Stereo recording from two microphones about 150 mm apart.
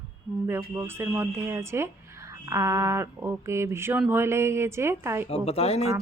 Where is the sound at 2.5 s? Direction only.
20° right (ahead or behind).